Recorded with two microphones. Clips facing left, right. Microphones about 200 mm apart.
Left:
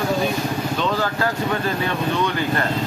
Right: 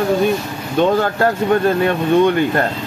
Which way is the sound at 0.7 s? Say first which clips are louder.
Right 11 dB; 55° right (ahead or behind).